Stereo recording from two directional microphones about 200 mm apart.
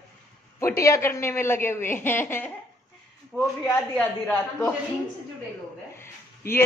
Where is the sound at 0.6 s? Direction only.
15° left (ahead or behind).